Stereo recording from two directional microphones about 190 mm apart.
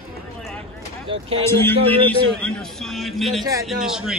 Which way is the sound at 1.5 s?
10° left (ahead or behind).